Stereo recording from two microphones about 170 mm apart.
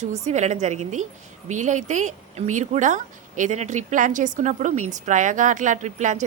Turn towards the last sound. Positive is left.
turn(degrees=-45)  # may be behind; listen again after turning